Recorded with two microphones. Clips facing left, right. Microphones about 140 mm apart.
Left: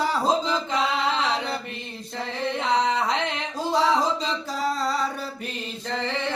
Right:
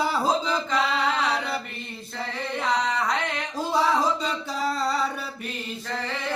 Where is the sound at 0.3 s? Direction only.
20° left (ahead or behind).